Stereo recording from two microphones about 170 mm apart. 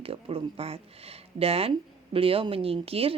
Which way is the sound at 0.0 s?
35° right (ahead or behind).